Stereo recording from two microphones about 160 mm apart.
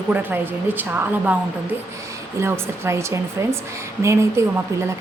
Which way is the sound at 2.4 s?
15° right (ahead or behind).